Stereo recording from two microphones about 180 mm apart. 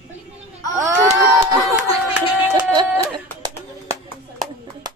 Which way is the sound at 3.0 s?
20° right (ahead or behind).